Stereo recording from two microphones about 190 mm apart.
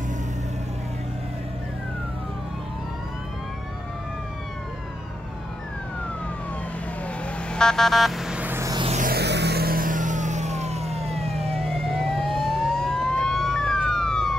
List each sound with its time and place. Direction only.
7.5 s vehicle: 5° left (ahead or behind); by 8.8 s 15° right (ahead or behind)
8.8 s music: 40° right (ahead or behind)
9.1 s vehicle: 60° right (ahead or behind); by 11.5 s 30° right (ahead or behind)
11.7 s emergency vehicle: 5° left (ahead or behind)